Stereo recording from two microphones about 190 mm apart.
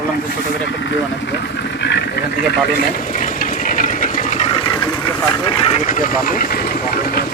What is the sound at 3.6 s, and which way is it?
Sewing machine, 45° left (ahead or behind).